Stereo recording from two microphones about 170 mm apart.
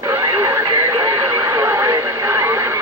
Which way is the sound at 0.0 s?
15° right (ahead or behind).